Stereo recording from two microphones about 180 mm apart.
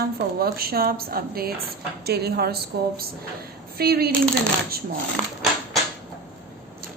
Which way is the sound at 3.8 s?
60° right (ahead or behind).